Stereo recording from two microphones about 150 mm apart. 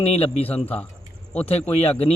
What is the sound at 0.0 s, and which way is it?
Speech, 40° left (ahead or behind).